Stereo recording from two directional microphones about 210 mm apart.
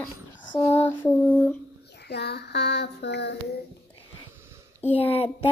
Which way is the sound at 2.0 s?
50° left (ahead or behind).